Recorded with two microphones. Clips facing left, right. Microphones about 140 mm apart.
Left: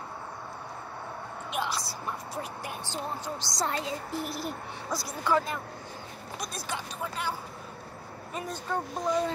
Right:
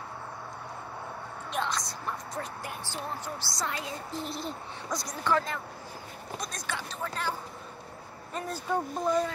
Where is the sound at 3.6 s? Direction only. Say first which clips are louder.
Left 4 dB; 30° left (ahead or behind).